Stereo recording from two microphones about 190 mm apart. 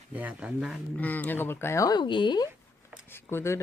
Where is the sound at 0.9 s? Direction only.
10° left (ahead or behind).